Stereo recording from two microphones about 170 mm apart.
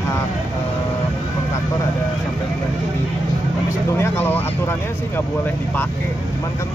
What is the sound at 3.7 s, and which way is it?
Speech, 15° left (ahead or behind).